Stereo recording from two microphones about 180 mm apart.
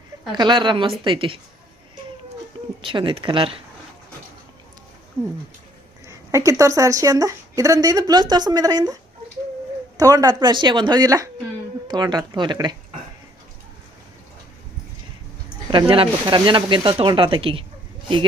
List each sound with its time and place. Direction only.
0.3 s speech: 25° right (ahead or behind)
2.8 s speech: 25° right (ahead or behind)
6.1 s speech: 15° right (ahead or behind)
10.0 s speech: 20° right (ahead or behind)
15.7 s speech: 30° right (ahead or behind)